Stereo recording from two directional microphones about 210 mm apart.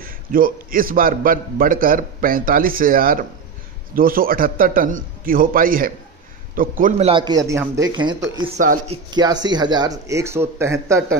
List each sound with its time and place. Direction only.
0.0 s a man's voice: 40° right (ahead or behind)
7.1 s speech: 20° right (ahead or behind)
8.5 s speech: 35° right (ahead or behind); by 11.1 s 15° right (ahead or behind)